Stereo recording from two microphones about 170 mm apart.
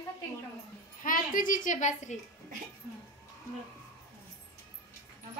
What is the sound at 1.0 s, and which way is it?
A woman's voice, 55° left (ahead or behind).